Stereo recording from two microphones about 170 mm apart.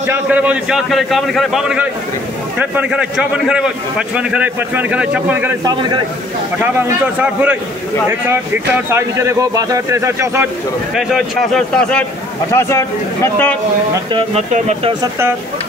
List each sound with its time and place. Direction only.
0.0 s a man's voice: 10° right (ahead or behind)
5.6 s a man's voice: 25° right (ahead or behind)
6.6 s speech: 10° right (ahead or behind)
8.9 s speech: 15° right (ahead or behind)
11.0 s a man's voice: centre (ahead or behind)
12.5 s a man's voice: 15° left (ahead or behind)
14.1 s speech: 40° right (ahead or behind)